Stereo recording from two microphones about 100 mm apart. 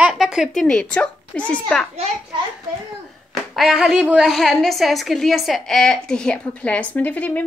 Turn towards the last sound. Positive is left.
turn(degrees=15)  # may be behind; listen again after turning